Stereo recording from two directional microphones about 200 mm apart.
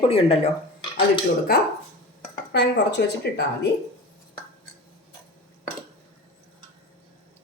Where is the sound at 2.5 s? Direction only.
60° left (ahead or behind).